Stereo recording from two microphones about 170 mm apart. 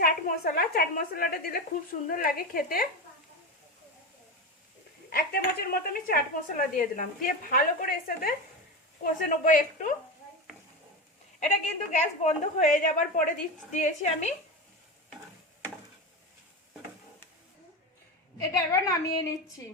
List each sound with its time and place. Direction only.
0.0 s speech: 60° left (ahead or behind)
5.1 s speech: 60° left (ahead or behind)
9.4 s a woman's voice: 50° left (ahead or behind)
11.3 s a woman's voice: 45° left (ahead or behind)
18.3 s a woman's voice: 20° left (ahead or behind)